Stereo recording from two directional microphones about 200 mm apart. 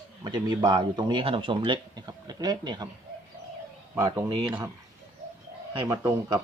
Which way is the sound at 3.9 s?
15° right (ahead or behind).